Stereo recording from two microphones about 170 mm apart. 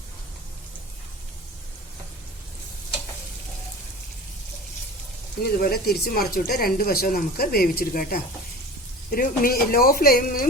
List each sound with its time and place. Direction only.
5.4 s speech: 65° left (ahead or behind)